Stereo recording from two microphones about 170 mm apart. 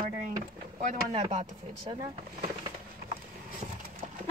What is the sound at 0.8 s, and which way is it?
Speech, 50° right (ahead or behind).